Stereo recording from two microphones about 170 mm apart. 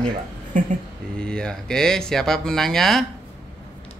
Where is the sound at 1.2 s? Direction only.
5° left (ahead or behind).